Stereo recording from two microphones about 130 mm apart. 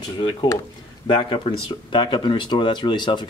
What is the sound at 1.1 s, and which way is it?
Speech, 40° left (ahead or behind).